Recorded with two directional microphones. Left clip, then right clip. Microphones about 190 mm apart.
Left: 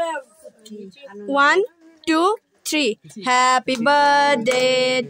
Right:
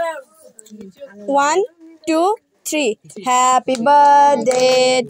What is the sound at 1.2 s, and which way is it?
Music, centre (ahead or behind).